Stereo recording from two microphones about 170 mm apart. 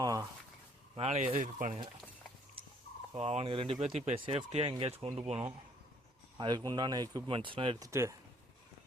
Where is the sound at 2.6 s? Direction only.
30° right (ahead or behind).